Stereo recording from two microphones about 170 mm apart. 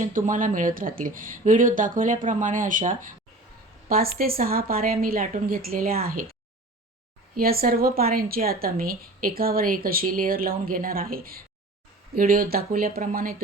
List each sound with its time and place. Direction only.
0.0 s a woman's voice: 50° right (ahead or behind)
7.3 s a woman's voice: 60° right (ahead or behind)